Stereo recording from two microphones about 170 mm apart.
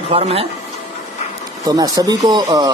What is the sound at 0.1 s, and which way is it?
Speech, 35° right (ahead or behind).